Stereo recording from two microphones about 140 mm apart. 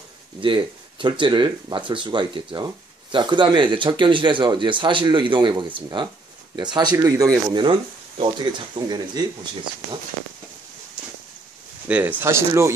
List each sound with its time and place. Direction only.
0.4 s speech: 35° right (ahead or behind)
11.9 s speech: 10° right (ahead or behind)